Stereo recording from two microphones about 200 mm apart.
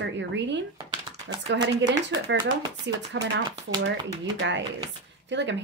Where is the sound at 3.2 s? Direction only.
65° right (ahead or behind).